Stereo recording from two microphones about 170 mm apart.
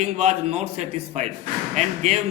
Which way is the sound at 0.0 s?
40° right (ahead or behind).